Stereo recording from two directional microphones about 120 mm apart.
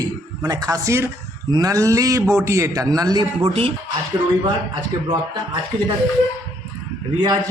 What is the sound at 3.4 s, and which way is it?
Speech, 55° right (ahead or behind).